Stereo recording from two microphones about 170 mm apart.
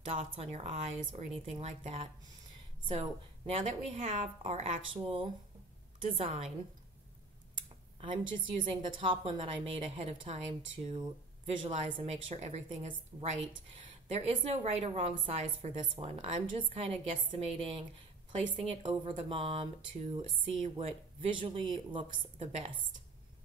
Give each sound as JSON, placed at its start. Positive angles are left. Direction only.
{"t": 0.2, "sound": "a woman's voice", "side_deg": -35}
{"t": 8.4, "sound": "a woman's voice", "side_deg": -30}